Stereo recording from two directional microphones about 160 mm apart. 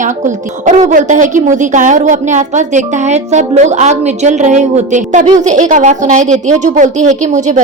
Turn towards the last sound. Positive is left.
turn(degrees=-50)  # may be behind; listen again after turning